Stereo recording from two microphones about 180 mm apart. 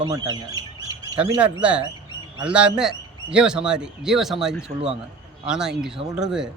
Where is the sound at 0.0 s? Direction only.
20° right (ahead or behind).